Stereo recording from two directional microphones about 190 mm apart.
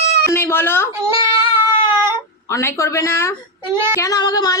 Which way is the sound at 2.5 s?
15° left (ahead or behind).